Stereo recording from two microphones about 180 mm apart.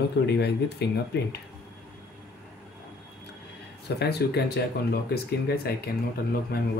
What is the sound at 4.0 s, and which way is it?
Speech, 60° left (ahead or behind).